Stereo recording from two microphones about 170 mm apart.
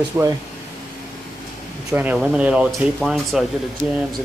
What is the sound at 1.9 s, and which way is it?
Speech, 10° right (ahead or behind).